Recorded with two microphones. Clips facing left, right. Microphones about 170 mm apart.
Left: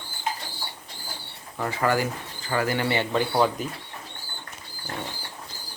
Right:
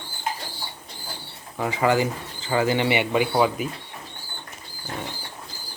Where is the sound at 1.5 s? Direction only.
15° right (ahead or behind).